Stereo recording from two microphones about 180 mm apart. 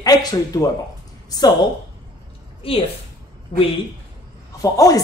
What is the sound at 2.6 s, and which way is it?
Speech, 30° left (ahead or behind).